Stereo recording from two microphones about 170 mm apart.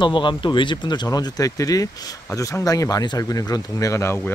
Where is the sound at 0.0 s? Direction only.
30° left (ahead or behind).